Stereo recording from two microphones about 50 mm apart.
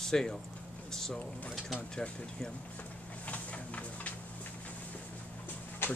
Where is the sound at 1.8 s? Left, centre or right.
Left.